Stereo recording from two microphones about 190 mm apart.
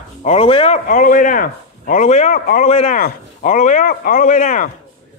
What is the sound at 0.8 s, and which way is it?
A man's voice, 45° left (ahead or behind).